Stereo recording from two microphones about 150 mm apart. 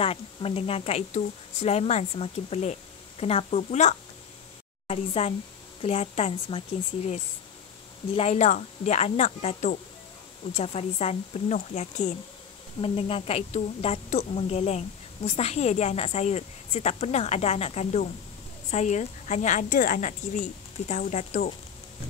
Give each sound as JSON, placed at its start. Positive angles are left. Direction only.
{"t": 0.0, "sound": "a woman's voice", "side_deg": 40}
{"t": 12.8, "sound": "a woman's voice", "side_deg": 40}